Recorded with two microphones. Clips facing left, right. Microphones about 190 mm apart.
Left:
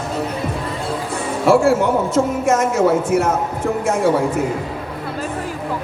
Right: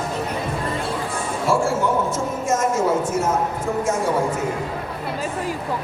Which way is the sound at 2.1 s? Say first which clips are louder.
Left 6 dB; 65° left (ahead or behind).